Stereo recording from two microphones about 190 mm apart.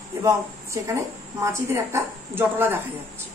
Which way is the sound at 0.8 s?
15° right (ahead or behind).